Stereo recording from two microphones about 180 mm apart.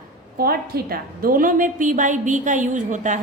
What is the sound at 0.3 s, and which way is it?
A woman's voice, 55° right (ahead or behind).